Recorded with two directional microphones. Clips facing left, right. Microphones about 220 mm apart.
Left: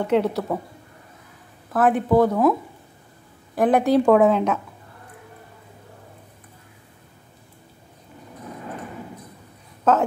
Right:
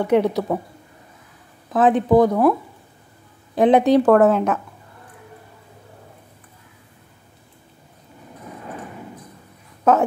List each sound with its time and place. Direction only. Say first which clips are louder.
0.0 s speech: right 3 dB; 15° right (ahead or behind)
1.7 s speech: right 3 dB; 20° right (ahead or behind)
3.5 s a woman's voice: right 3 dB; 20° right (ahead or behind)
4.0 s a woman's voice: right 2 dB; 5° right (ahead or behind)